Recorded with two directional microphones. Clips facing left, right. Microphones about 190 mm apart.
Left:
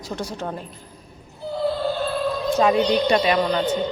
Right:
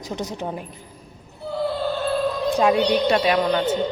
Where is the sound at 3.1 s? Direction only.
5° right (ahead or behind).